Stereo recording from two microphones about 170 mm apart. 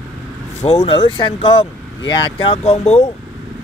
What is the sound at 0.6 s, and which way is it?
Speech, 40° left (ahead or behind).